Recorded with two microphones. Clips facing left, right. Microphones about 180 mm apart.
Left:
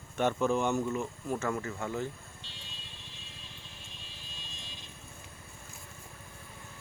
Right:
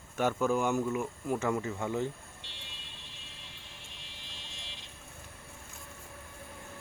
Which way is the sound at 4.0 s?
70° right (ahead or behind).